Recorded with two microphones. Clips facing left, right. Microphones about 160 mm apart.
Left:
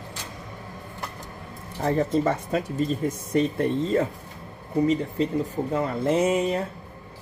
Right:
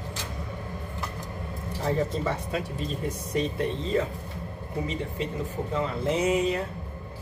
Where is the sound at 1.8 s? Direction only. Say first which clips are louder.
Left 5 dB; 50° left (ahead or behind).